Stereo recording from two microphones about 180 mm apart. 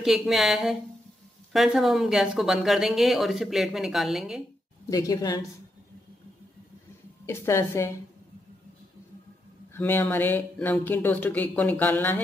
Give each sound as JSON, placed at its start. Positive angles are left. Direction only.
{"t": 0.0, "sound": "a woman's voice", "side_deg": 0}
{"t": 4.8, "sound": "a woman's voice", "side_deg": 20}
{"t": 7.2, "sound": "speech", "side_deg": 15}
{"t": 9.8, "sound": "speech", "side_deg": 10}